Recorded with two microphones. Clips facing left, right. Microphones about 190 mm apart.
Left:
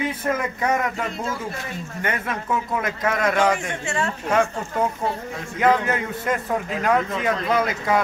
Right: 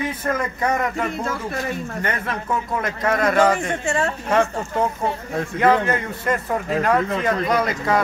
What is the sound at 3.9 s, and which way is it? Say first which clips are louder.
Speech: right 3 dB; 40° right (ahead or behind).